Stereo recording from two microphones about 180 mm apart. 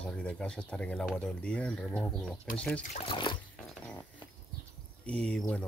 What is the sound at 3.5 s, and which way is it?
Pig, centre (ahead or behind).